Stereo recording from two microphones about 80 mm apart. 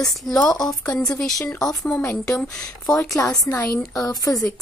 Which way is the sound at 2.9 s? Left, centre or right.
Left.